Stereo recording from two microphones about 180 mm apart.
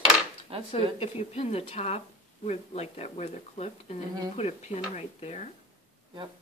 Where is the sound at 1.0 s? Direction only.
35° left (ahead or behind).